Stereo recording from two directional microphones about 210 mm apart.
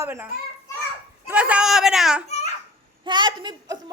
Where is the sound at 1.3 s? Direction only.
5° right (ahead or behind).